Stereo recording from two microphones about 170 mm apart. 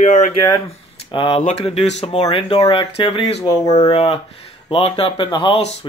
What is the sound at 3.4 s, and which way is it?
Speech, 20° left (ahead or behind).